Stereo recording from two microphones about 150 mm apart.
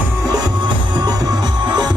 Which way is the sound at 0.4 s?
30° right (ahead or behind).